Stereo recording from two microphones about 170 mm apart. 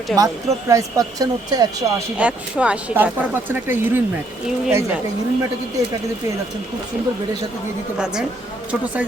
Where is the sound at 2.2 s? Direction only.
5° right (ahead or behind).